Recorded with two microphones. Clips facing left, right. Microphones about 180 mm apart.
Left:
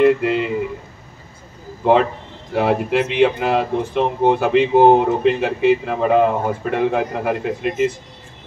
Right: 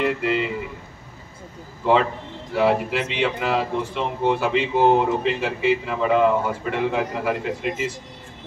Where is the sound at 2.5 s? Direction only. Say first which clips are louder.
Left 3 dB; 50° left (ahead or behind).